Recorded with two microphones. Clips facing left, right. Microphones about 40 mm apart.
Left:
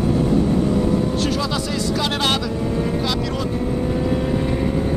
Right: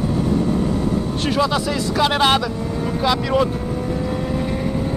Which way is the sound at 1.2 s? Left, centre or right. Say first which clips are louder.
Right 3 dB; centre.